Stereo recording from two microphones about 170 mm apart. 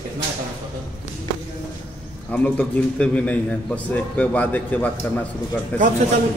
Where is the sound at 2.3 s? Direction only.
5° left (ahead or behind).